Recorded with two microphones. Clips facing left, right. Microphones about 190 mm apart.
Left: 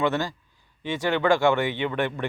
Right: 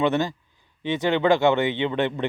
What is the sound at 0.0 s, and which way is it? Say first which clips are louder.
Speech: right 3 dB; 20° right (ahead or behind).